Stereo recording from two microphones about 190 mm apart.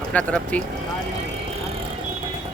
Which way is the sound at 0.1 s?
5° left (ahead or behind).